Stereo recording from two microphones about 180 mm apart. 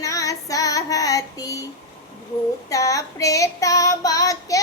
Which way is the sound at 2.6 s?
20° left (ahead or behind).